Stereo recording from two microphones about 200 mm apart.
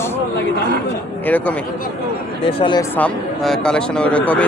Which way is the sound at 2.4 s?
25° left (ahead or behind).